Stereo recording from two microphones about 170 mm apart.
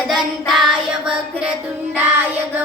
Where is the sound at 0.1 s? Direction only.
Centre (ahead or behind).